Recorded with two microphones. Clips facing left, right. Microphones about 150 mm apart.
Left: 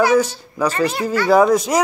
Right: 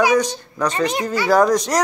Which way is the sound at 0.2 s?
5° left (ahead or behind).